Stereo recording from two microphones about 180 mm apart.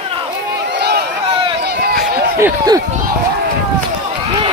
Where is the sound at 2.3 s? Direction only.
15° right (ahead or behind).